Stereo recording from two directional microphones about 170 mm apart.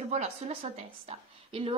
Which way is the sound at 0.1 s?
40° right (ahead or behind).